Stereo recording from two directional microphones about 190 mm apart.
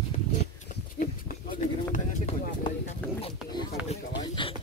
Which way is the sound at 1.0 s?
45° left (ahead or behind).